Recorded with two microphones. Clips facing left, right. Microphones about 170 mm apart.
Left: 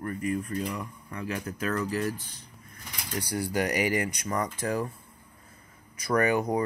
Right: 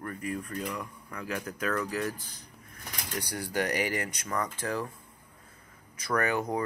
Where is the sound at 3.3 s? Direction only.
10° left (ahead or behind).